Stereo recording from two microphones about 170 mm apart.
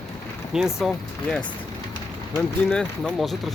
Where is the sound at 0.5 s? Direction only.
Centre (ahead or behind).